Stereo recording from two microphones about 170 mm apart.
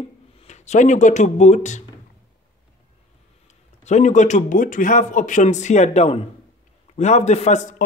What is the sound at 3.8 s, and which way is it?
A man's voice, 45° left (ahead or behind).